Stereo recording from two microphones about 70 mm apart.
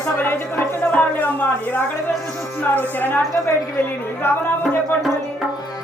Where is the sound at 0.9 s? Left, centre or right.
Left.